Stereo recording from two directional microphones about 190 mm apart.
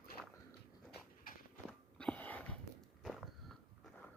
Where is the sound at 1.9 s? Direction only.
5° left (ahead or behind).